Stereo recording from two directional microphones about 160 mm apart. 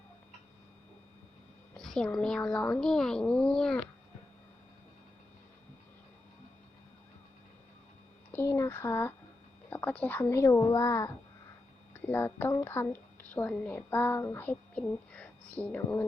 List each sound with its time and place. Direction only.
1.7 s speech: 5° left (ahead or behind)
8.3 s a woman's voice: 15° left (ahead or behind)